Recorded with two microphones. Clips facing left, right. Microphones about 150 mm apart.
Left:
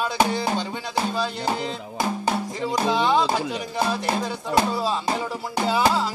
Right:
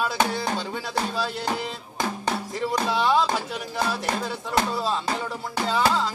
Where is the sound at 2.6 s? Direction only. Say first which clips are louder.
Even; 5° right (ahead or behind).